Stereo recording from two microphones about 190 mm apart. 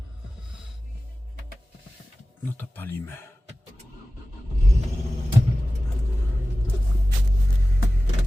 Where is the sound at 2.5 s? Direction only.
10° left (ahead or behind).